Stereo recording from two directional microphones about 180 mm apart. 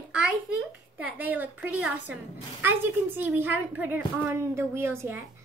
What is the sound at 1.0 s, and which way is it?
A woman's voice, 10° right (ahead or behind).